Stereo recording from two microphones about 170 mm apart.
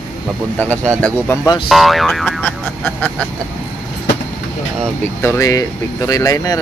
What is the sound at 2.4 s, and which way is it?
Vehicle, 10° left (ahead or behind).